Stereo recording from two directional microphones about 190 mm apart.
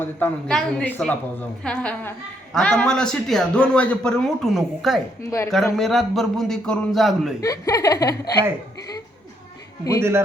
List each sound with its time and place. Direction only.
0.0 s a woman's voice: 5° left (ahead or behind)
5.2 s speech: 15° left (ahead or behind)
5.7 s a woman's voice: centre (ahead or behind)
7.4 s speech: 15° left (ahead or behind)